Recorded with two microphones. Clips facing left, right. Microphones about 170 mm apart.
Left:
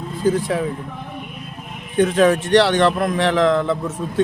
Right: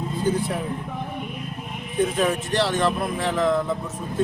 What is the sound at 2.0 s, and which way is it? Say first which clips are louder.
A man's voice: left 7 dB; 90° left.